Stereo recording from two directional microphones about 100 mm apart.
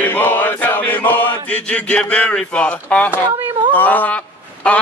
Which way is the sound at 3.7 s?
20° left (ahead or behind).